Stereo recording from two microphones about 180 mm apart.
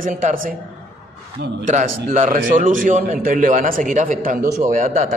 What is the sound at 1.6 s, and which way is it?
A man's voice, 45° right (ahead or behind).